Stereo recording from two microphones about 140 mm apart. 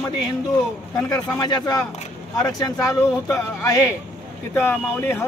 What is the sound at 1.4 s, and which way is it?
Speech, 30° left (ahead or behind).